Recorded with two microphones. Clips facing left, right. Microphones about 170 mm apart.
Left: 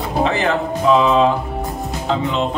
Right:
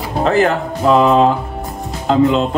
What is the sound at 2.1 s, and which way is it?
Speech, 40° right (ahead or behind).